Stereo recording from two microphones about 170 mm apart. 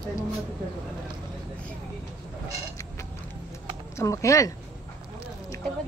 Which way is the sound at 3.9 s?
20° left (ahead or behind).